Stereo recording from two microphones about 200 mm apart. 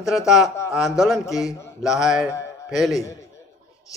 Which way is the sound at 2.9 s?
15° left (ahead or behind).